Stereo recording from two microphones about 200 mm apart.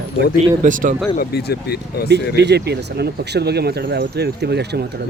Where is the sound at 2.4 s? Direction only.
55° right (ahead or behind).